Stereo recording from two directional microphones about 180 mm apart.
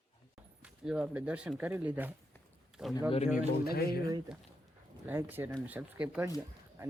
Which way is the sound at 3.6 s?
60° left (ahead or behind).